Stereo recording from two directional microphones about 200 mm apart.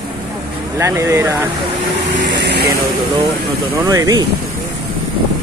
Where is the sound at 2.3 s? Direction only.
55° right (ahead or behind).